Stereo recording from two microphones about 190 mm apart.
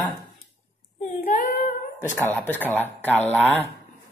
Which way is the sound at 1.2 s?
45° left (ahead or behind).